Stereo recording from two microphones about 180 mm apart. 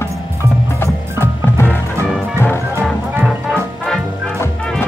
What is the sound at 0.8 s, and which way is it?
Music, 15° left (ahead or behind).